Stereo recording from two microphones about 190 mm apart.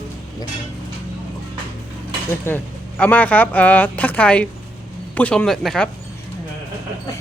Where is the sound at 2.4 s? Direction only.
10° left (ahead or behind).